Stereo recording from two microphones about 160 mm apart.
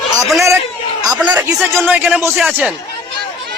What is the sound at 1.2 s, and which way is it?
A man's voice, 10° right (ahead or behind).